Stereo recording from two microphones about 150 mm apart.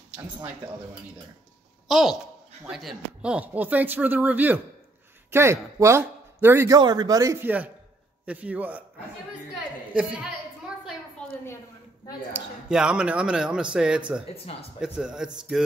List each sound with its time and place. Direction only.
1.9 s a woman's voice: centre (ahead or behind); by 6.8 s 15° right (ahead or behind)
6.8 s a man's voice: 30° right (ahead or behind); by 8.8 s 10° right (ahead or behind)
9.6 s a sound: 5° right (ahead or behind)
11.2 s a sound: 5° left (ahead or behind)
12.3 s speech: 5° right (ahead or behind)
14.3 s speech: 40° left (ahead or behind)
14.8 s speech: 5° right (ahead or behind)